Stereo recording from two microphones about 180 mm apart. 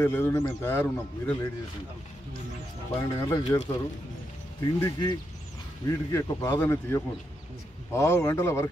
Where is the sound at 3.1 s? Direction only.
15° left (ahead or behind).